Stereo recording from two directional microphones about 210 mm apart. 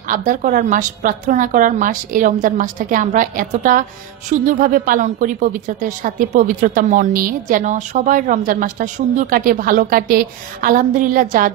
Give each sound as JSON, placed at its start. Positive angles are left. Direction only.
{"t": 0.1, "sound": "a woman's voice", "side_deg": -40}